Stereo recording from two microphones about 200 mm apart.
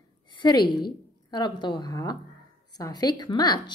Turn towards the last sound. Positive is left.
turn(degrees=20)  # may be behind; listen again after turning